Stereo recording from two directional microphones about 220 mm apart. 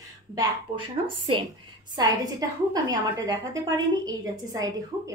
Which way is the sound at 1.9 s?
15° right (ahead or behind).